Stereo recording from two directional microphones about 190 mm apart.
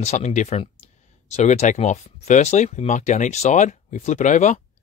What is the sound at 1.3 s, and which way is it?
Speech, 35° left (ahead or behind).